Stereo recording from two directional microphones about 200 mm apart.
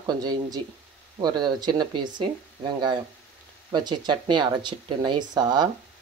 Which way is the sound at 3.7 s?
20° right (ahead or behind).